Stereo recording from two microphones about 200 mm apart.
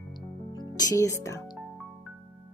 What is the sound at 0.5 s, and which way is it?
Music, 15° left (ahead or behind).